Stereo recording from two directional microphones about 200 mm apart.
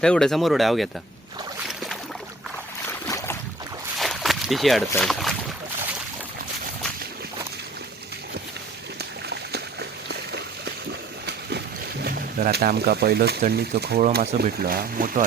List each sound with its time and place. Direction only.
0.0 s speech: 5° left (ahead or behind)
3.1 s boat: 15° left (ahead or behind)
3.9 s a sound: centre (ahead or behind)
10.1 s a sound: 55° right (ahead or behind)
12.0 s speech: 55° right (ahead or behind)
14.3 s speech: 35° right (ahead or behind)
14.7 s speech: 45° right (ahead or behind)